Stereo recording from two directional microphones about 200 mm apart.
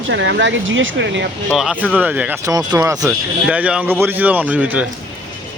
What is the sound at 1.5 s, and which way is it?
Speech, centre (ahead or behind).